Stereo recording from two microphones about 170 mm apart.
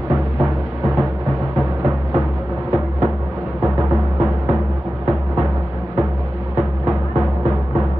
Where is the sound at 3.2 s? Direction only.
15° right (ahead or behind).